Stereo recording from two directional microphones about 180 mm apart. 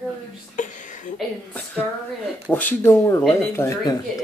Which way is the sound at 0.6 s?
45° left (ahead or behind).